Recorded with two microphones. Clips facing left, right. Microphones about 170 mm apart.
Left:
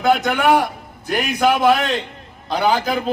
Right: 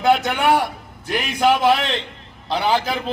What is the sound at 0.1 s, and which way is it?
A man's voice, 45° left (ahead or behind).